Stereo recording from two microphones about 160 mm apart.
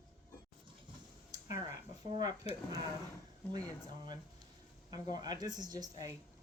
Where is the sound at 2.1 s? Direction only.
25° right (ahead or behind).